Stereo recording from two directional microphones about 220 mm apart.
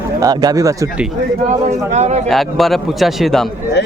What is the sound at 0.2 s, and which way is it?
Speech, 15° right (ahead or behind).